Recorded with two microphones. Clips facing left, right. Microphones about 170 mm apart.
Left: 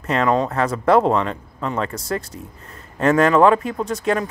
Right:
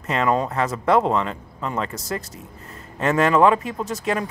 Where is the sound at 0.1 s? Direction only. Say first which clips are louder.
Left 2 dB; centre (ahead or behind).